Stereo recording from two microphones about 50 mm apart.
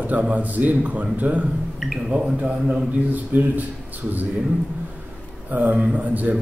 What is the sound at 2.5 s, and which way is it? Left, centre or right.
Speech, centre.